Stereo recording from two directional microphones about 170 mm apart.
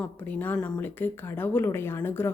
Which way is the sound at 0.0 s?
10° left (ahead or behind).